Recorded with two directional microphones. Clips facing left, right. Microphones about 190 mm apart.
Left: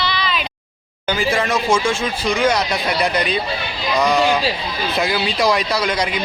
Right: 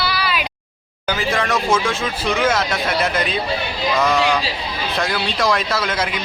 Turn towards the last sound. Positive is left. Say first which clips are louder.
# left 2 dB
turn(degrees=0)  # may be behind; listen again after turning